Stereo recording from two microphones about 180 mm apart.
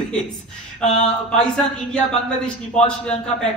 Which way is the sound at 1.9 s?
5° left (ahead or behind).